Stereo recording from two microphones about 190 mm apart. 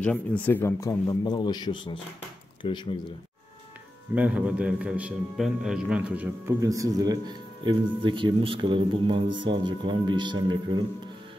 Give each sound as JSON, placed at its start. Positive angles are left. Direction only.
{"t": 0.0, "sound": "a man's voice", "side_deg": 10}
{"t": 4.1, "sound": "a man's voice", "side_deg": -5}